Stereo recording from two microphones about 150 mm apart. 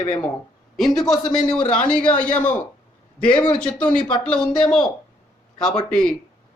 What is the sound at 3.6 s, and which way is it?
Speech, 5° left (ahead or behind).